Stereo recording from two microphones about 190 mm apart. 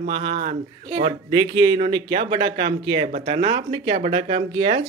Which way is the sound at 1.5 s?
30° right (ahead or behind).